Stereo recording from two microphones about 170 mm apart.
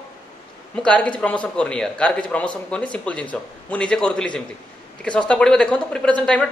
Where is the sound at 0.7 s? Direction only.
5° left (ahead or behind).